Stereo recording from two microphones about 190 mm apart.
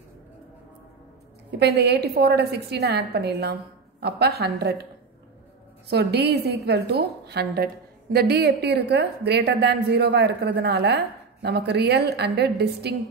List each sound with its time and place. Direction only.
1.6 s a woman's voice: 60° right (ahead or behind)
5.9 s a woman's voice: 60° right (ahead or behind)